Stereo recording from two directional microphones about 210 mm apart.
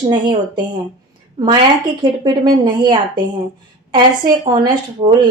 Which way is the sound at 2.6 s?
20° right (ahead or behind).